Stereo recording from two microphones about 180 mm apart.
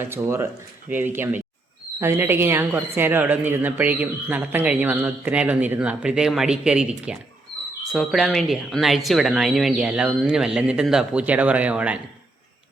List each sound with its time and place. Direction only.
0.0 s a woman's voice: 15° right (ahead or behind)